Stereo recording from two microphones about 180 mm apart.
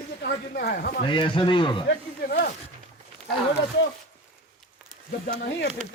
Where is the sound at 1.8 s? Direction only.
55° left (ahead or behind).